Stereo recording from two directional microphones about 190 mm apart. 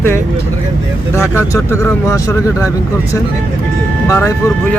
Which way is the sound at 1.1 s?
15° left (ahead or behind).